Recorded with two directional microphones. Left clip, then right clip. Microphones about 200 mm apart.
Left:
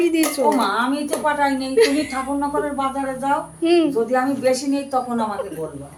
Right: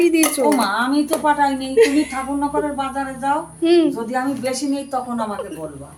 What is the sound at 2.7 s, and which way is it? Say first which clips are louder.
Speech: left 1 dB; 10° left (ahead or behind).